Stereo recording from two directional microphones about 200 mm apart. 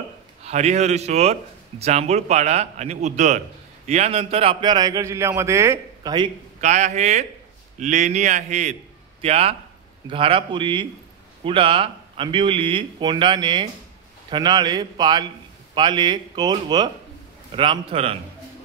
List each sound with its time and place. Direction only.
0.4 s speech: 35° right (ahead or behind)
6.6 s speech: 35° right (ahead or behind)